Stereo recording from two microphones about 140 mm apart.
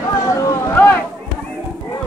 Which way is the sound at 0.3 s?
20° left (ahead or behind).